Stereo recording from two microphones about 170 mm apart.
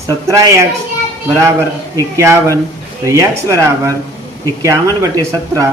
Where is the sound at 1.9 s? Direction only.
15° right (ahead or behind).